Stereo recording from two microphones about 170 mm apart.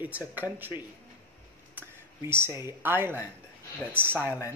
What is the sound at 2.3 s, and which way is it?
Speech, 15° right (ahead or behind).